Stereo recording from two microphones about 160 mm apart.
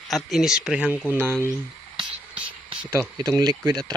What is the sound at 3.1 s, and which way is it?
Speech, 25° right (ahead or behind).